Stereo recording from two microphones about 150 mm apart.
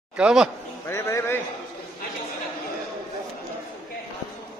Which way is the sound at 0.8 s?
15° left (ahead or behind).